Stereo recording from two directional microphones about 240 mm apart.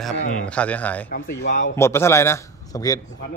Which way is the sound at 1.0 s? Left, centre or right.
Left.